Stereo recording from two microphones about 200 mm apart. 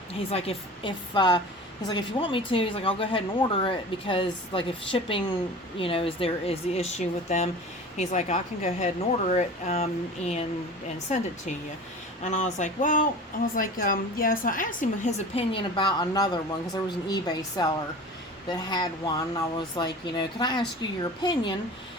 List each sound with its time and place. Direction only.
0.1 s speech: 30° left (ahead or behind)